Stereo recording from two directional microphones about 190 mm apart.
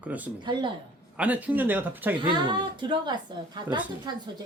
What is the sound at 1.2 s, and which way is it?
Speech, 10° right (ahead or behind).